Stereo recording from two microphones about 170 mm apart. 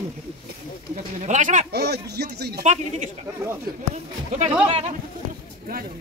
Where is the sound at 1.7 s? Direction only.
70° right (ahead or behind).